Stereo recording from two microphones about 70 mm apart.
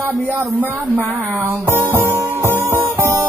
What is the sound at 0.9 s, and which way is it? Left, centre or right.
Music, right.